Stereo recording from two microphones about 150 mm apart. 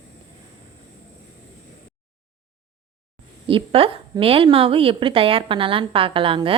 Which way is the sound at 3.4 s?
40° right (ahead or behind).